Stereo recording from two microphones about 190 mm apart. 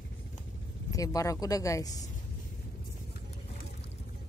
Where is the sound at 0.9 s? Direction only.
20° left (ahead or behind).